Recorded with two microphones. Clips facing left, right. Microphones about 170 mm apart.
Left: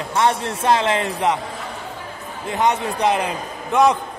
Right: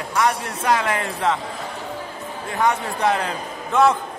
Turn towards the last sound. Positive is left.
turn(degrees=15)  # may be behind; listen again after turning